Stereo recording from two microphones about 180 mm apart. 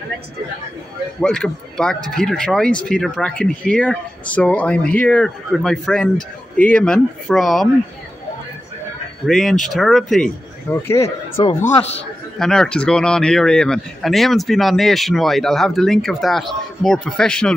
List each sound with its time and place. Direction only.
1.2 s speech: 5° left (ahead or behind)
9.2 s speech: centre (ahead or behind)
11.6 s a man's voice: 35° left (ahead or behind)
12.4 s speech: 5° left (ahead or behind)